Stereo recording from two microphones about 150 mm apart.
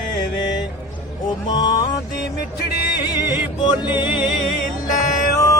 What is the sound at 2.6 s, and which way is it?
Music, 90° left.